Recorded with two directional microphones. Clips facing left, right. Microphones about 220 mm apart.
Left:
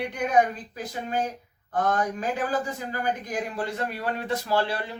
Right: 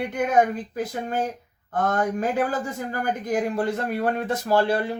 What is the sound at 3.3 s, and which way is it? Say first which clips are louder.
A man's voice: right 7 dB; 50° right (ahead or behind).